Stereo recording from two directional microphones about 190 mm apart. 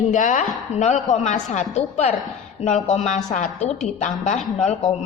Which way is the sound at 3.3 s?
40° left (ahead or behind).